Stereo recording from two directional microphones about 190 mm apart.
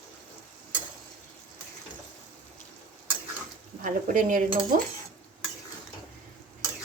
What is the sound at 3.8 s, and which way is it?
A woman's voice, 45° right (ahead or behind).